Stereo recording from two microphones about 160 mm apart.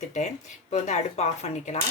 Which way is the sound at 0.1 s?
45° left (ahead or behind).